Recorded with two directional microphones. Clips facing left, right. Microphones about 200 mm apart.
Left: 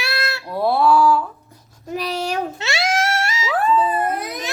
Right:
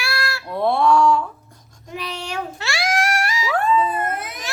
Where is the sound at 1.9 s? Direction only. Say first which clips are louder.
Left 6 dB; 40° left (ahead or behind).